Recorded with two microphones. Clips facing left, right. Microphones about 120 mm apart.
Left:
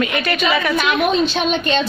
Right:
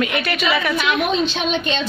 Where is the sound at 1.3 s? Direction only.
45° left (ahead or behind).